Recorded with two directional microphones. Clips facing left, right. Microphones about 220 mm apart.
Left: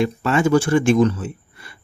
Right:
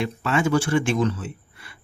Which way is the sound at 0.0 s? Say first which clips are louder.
Left 5 dB; 40° left (ahead or behind).